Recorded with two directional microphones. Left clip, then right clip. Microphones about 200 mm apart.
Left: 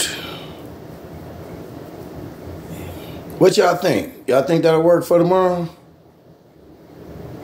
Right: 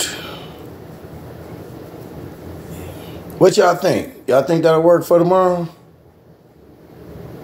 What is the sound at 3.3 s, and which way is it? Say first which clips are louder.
Speech: right 2 dB; 5° right (ahead or behind).